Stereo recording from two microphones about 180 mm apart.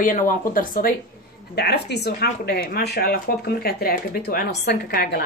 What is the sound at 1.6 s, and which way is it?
Speech, 65° left (ahead or behind).